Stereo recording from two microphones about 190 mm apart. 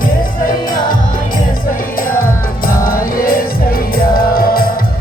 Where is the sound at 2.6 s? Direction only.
50° left (ahead or behind).